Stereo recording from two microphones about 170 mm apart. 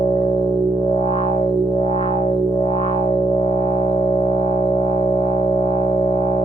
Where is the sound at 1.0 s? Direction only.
35° left (ahead or behind).